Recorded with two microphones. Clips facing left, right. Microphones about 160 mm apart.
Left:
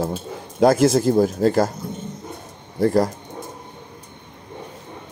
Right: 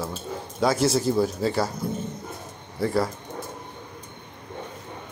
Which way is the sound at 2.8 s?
45° left (ahead or behind).